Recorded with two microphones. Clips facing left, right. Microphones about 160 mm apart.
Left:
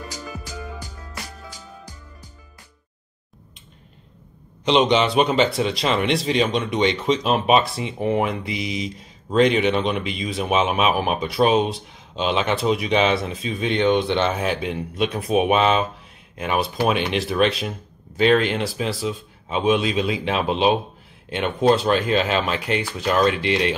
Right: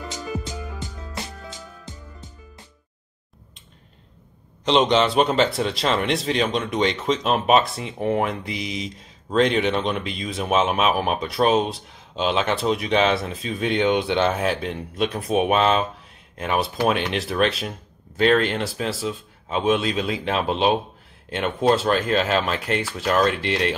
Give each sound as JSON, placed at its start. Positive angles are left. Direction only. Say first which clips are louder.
{"t": 0.1, "sound": "music", "louder": "right 4 dB", "side_deg": -25}
{"t": 4.6, "sound": "speech", "louder": "left 1 dB", "side_deg": 5}